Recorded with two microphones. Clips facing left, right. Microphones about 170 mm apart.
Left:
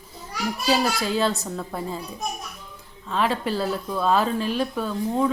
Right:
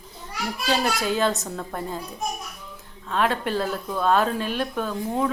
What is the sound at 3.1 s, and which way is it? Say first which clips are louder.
Speech: even; centre (ahead or behind).